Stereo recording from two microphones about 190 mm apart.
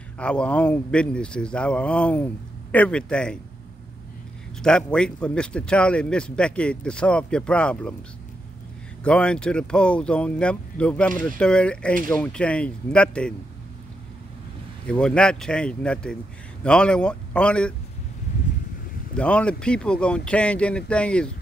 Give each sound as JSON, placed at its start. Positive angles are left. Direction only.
{"t": 0.2, "sound": "speech", "side_deg": 5}
{"t": 4.6, "sound": "speech", "side_deg": 5}
{"t": 9.0, "sound": "speech", "side_deg": 5}
{"t": 14.9, "sound": "speech", "side_deg": 5}
{"t": 19.1, "sound": "speech", "side_deg": 5}